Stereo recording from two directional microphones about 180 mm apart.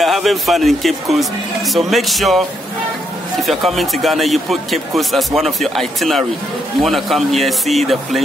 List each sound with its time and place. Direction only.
0.0 s a man's voice: centre (ahead or behind)
3.4 s a man's voice: centre (ahead or behind)